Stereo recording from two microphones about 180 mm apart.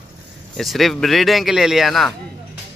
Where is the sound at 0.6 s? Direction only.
Centre (ahead or behind).